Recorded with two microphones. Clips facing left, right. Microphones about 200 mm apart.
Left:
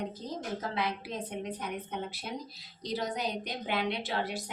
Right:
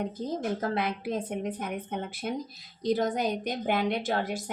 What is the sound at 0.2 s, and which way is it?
A woman's voice, 50° right (ahead or behind).